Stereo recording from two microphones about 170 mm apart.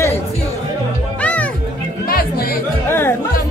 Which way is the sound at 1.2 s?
10° left (ahead or behind).